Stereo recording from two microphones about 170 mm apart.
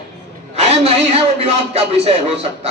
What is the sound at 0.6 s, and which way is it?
Speech, 35° right (ahead or behind).